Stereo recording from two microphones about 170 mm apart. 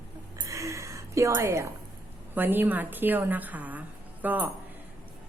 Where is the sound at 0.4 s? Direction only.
20° right (ahead or behind).